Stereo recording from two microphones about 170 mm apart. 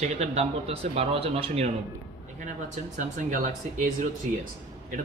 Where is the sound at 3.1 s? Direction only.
45° right (ahead or behind).